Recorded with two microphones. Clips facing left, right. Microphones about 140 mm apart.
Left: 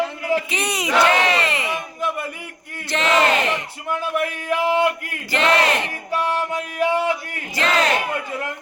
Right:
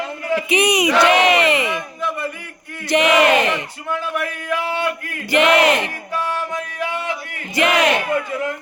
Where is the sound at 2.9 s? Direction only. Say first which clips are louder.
Right 4 dB; 15° right (ahead or behind).